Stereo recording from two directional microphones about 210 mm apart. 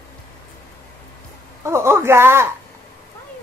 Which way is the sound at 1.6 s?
10° right (ahead or behind).